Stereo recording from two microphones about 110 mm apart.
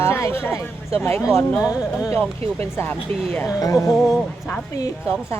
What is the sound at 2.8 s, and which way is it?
Speech, 15° left (ahead or behind).